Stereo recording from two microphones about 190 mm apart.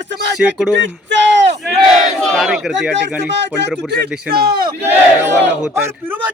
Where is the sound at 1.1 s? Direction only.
70° right (ahead or behind).